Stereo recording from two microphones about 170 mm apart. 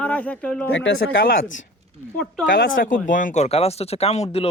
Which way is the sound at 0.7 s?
90° left.